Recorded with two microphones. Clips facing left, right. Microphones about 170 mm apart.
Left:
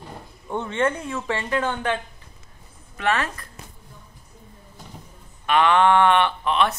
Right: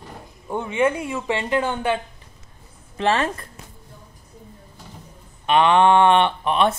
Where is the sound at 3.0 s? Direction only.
25° right (ahead or behind).